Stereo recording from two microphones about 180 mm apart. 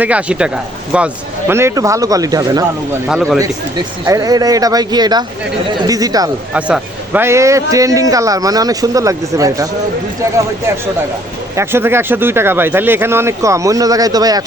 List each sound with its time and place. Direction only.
0.0 s speech: 5° right (ahead or behind)
3.1 s speech: 5° left (ahead or behind)
3.3 s a man's voice: 20° right (ahead or behind)
6.5 s a man's voice: 5° right (ahead or behind)
11.5 s speech: 15° right (ahead or behind)